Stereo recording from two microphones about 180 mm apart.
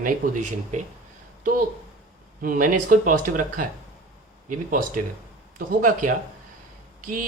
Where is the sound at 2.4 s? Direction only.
50° right (ahead or behind).